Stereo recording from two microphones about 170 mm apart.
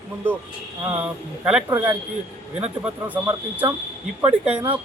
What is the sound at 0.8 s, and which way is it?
Speech, 10° right (ahead or behind).